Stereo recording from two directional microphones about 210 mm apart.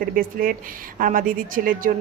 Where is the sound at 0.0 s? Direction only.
40° right (ahead or behind).